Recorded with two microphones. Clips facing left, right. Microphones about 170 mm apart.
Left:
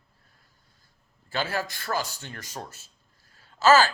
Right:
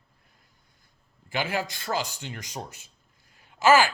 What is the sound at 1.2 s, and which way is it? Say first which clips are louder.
A man's voice: right 1 dB; 15° right (ahead or behind).